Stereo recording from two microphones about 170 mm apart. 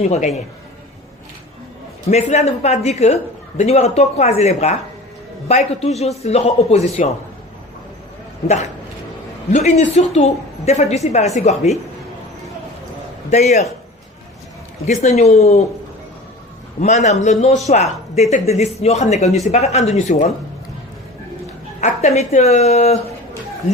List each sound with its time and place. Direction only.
0.0 s a man's voice: 40° left (ahead or behind)
2.0 s a man's voice: 40° left (ahead or behind)
9.5 s a woman's voice: 45° left (ahead or behind)
13.3 s a man's voice: 40° left (ahead or behind)
14.8 s a man's voice: 40° left (ahead or behind)
16.8 s a woman's voice: 40° left (ahead or behind)
21.8 s a man's voice: 40° left (ahead or behind)